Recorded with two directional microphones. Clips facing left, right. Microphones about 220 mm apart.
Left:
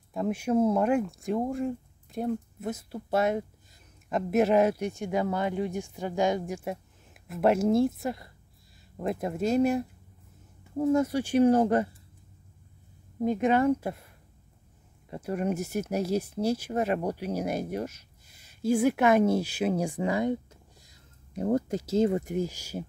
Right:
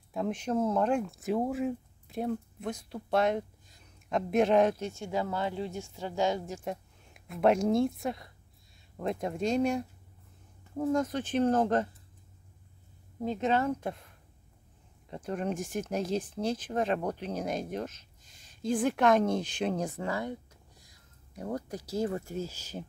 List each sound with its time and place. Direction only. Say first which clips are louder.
0.1 s speech: left 4 dB; 5° left (ahead or behind)
13.2 s speech: left 5 dB; 15° left (ahead or behind)